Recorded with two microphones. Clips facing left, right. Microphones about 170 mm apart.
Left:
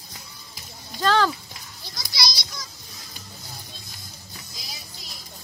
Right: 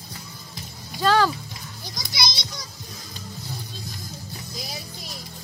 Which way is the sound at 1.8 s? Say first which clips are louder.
Right 1 dB; 20° right (ahead or behind).